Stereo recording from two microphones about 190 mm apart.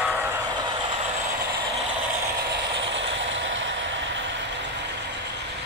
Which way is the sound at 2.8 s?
75° right (ahead or behind).